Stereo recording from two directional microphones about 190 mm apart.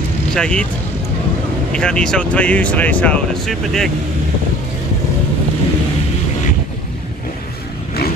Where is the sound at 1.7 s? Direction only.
5° left (ahead or behind).